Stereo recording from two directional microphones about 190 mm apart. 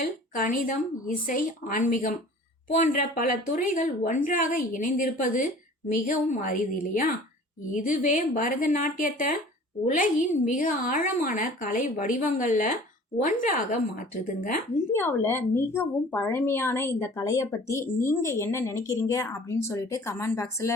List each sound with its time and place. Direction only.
0.3 s a woman's voice: 45° left (ahead or behind)
14.9 s a woman's voice: 10° left (ahead or behind)